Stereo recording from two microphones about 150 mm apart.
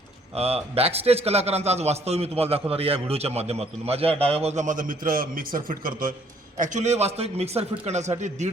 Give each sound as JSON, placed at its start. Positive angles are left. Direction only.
{"t": 0.3, "sound": "a man's voice", "side_deg": -40}
{"t": 6.6, "sound": "a man's voice", "side_deg": -50}